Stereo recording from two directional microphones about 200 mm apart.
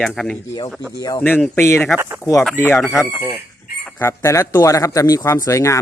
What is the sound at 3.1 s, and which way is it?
Speech, 5° left (ahead or behind).